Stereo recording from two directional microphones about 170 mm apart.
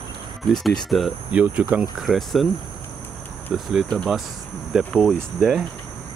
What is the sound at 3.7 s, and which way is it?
Speech, centre (ahead or behind).